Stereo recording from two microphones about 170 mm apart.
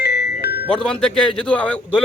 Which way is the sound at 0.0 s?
80° left.